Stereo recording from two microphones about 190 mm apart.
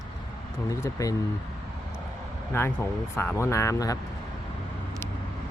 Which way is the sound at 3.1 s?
15° left (ahead or behind).